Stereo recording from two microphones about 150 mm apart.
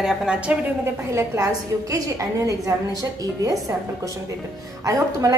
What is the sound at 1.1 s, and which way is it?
A woman's voice, 20° right (ahead or behind).